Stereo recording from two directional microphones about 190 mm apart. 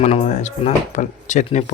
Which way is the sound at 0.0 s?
35° left (ahead or behind).